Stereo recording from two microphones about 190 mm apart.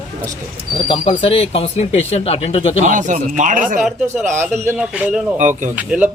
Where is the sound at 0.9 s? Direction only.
30° left (ahead or behind).